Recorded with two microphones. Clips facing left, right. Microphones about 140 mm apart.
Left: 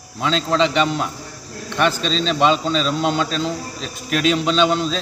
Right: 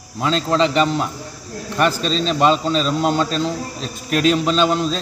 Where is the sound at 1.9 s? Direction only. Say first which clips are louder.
Right 1 dB; 40° right (ahead or behind).